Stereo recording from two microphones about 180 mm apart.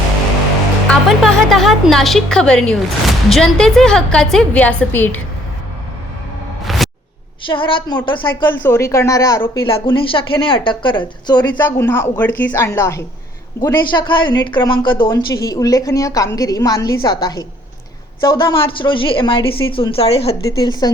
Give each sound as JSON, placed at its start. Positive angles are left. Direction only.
{"t": 0.9, "sound": "a woman's voice", "side_deg": 0}
{"t": 6.7, "sound": "music", "side_deg": 0}
{"t": 7.4, "sound": "speech", "side_deg": 30}
{"t": 8.4, "sound": "a woman's voice", "side_deg": 10}
{"t": 9.6, "sound": "speech", "side_deg": 30}
{"t": 11.6, "sound": "a woman's voice", "side_deg": 15}
{"t": 20.6, "sound": "speech", "side_deg": 20}